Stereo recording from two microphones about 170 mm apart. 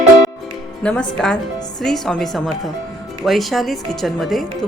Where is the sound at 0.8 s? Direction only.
5° left (ahead or behind).